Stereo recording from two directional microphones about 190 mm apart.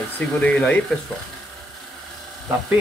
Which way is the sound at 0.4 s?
5° left (ahead or behind).